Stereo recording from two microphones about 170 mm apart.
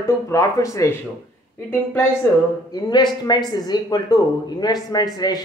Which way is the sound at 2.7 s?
25° left (ahead or behind).